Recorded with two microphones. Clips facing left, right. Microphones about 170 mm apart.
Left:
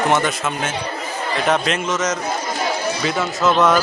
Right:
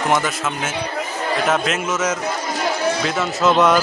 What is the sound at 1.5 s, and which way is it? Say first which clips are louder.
Speech: left 1 dB; 5° right (ahead or behind).